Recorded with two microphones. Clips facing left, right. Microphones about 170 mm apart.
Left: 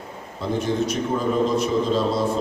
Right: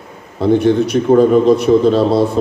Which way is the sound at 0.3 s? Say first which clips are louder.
Right 11 dB; 65° right (ahead or behind).